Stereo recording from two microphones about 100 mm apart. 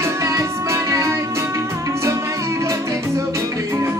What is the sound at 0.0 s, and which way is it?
Music, 30° right (ahead or behind).